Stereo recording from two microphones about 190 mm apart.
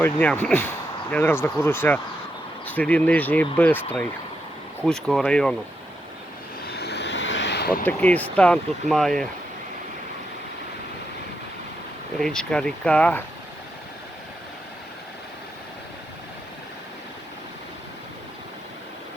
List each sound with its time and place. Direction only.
0.0 s speech: 5° left (ahead or behind)
6.7 s vehicle: 60° left (ahead or behind)
7.9 s speech: 10° left (ahead or behind)
12.2 s speech: 5° left (ahead or behind)